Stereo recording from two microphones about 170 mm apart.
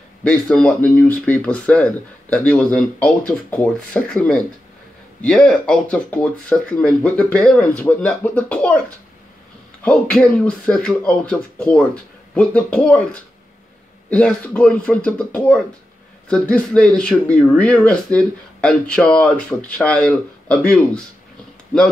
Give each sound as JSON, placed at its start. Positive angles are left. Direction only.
{"t": 0.2, "sound": "speech", "side_deg": 5}
{"t": 9.8, "sound": "speech", "side_deg": 5}